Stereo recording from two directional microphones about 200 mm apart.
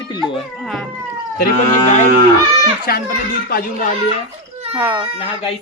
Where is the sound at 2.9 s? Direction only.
50° left (ahead or behind).